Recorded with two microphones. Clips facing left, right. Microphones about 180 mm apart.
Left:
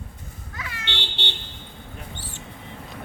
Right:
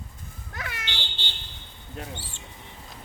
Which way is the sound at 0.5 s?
60° right (ahead or behind).